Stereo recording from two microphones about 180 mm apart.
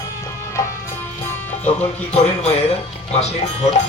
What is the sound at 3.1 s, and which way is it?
Speech, 35° left (ahead or behind).